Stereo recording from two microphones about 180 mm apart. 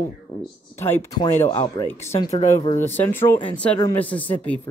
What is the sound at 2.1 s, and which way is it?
Speech, 35° left (ahead or behind).